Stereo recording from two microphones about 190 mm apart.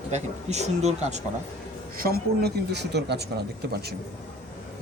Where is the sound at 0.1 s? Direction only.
35° right (ahead or behind).